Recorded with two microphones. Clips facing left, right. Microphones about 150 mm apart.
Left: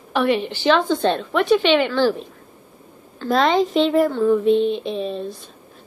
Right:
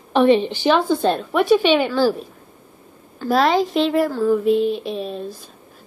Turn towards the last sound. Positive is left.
turn(degrees=-5)  # may be behind; listen again after turning